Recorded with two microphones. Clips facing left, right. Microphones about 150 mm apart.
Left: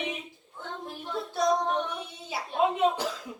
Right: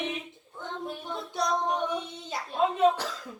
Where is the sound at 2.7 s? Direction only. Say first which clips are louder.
Right 2 dB; 15° left (ahead or behind).